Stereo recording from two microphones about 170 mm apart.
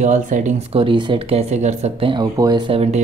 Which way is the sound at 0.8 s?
30° right (ahead or behind).